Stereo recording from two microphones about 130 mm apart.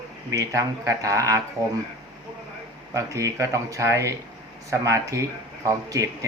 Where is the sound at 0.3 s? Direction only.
25° right (ahead or behind).